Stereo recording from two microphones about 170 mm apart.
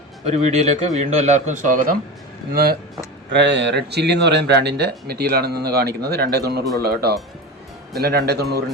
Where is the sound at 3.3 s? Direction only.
90° right.